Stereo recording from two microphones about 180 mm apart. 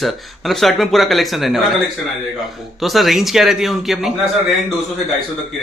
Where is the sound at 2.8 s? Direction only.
Centre (ahead or behind).